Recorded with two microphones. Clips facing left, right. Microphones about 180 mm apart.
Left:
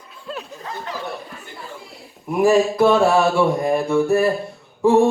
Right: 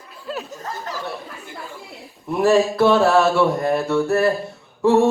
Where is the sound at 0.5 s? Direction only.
40° right (ahead or behind).